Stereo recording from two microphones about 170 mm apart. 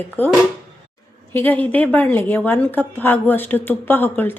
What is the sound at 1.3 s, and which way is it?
A woman's voice, 10° left (ahead or behind).